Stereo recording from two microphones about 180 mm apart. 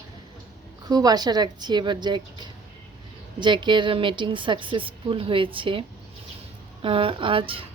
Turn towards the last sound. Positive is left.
turn(degrees=-30)  # may be behind; listen again after turning